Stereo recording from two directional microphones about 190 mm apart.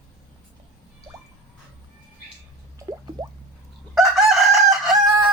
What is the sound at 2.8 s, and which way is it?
Drip, 20° right (ahead or behind).